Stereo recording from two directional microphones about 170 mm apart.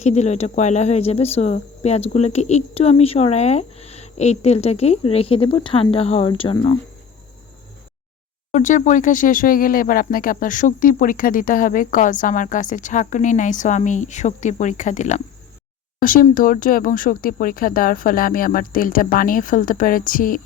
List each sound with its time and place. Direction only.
0.0 s speech: 40° left (ahead or behind)
8.5 s speech: 45° left (ahead or behind)